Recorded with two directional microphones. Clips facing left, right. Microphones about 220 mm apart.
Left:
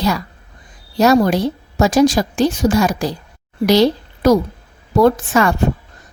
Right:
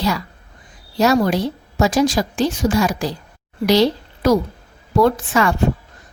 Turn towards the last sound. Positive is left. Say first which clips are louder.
# left 3 dB
turn(degrees=45)  # may be behind; listen again after turning